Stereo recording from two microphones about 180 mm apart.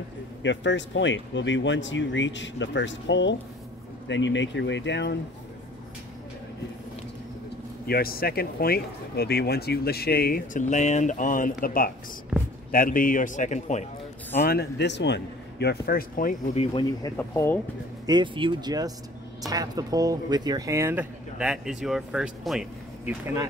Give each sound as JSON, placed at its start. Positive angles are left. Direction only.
{"t": 0.4, "sound": "speech", "side_deg": 85}
{"t": 7.8, "sound": "speech", "side_deg": 55}
{"t": 14.4, "sound": "speech", "side_deg": 60}
{"t": 17.2, "sound": "speech", "side_deg": 15}
{"t": 18.0, "sound": "speech", "side_deg": -25}